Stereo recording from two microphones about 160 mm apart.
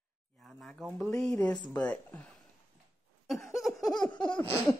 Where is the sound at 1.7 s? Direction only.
10° left (ahead or behind).